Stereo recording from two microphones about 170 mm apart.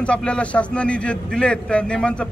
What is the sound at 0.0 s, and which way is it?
A man's voice, 5° left (ahead or behind).